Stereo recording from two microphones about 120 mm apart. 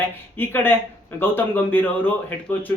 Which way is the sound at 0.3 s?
20° left (ahead or behind).